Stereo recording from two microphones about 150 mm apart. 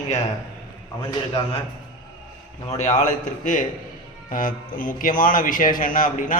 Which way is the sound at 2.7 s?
50° left (ahead or behind).